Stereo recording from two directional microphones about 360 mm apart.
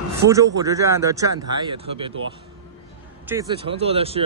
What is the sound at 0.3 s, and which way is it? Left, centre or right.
Speech, centre.